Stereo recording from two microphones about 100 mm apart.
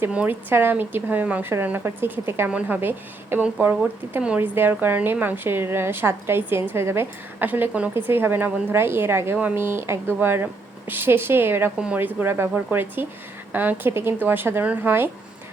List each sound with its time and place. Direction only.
0.0 s a woman's voice: 15° right (ahead or behind)
2.5 s a woman's voice: 15° right (ahead or behind)